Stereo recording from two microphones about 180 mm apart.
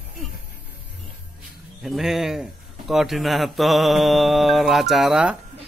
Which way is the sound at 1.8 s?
Centre (ahead or behind).